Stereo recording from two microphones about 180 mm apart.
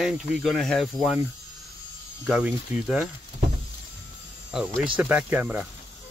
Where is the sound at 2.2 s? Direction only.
5° right (ahead or behind).